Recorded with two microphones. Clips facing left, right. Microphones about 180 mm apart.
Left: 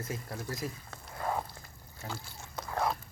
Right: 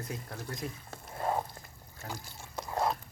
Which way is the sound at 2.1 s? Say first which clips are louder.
Even; 15° right (ahead or behind).